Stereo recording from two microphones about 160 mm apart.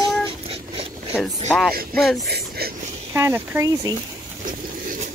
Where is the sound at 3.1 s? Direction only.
15° right (ahead or behind).